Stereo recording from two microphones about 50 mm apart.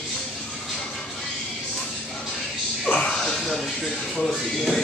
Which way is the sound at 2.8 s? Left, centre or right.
Left.